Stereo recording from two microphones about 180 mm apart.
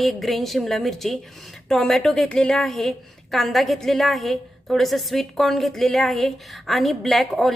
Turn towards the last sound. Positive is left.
turn(degrees=0)  # may be behind; listen again after turning